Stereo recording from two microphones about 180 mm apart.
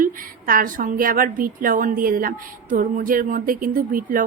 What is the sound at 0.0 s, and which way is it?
A woman's voice, 50° right (ahead or behind).